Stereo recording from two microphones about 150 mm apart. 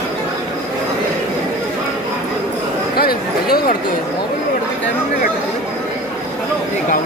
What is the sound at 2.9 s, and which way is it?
Speech, 90° left.